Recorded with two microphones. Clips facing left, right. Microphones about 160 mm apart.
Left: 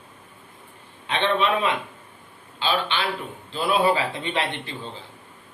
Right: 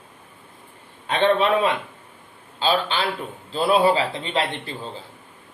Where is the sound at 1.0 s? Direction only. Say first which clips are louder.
Right 4 dB; 40° right (ahead or behind).